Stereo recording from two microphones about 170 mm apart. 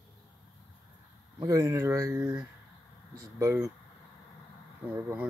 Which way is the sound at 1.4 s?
20° right (ahead or behind).